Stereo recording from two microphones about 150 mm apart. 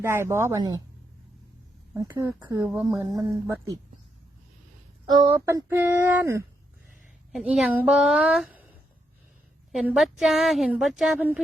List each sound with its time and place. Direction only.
0.0 s speech: 15° right (ahead or behind)
2.0 s speech: 15° right (ahead or behind)
2.8 s speech: 25° right (ahead or behind)
5.0 s speech: 30° right (ahead or behind)
5.3 s speech: 15° right (ahead or behind)
7.3 s a woman's voice: centre (ahead or behind)
7.7 s a sound: 5° right (ahead or behind)
9.7 s a woman's voice: centre (ahead or behind)